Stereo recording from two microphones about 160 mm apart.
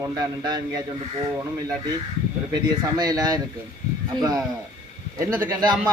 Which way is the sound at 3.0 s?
25° right (ahead or behind).